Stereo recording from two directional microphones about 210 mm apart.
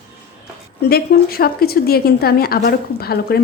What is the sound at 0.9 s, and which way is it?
A woman's voice, 45° left (ahead or behind).